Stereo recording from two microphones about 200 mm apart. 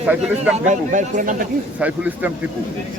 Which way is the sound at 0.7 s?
40° right (ahead or behind).